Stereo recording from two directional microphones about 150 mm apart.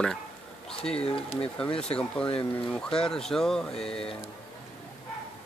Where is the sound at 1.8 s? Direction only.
5° left (ahead or behind).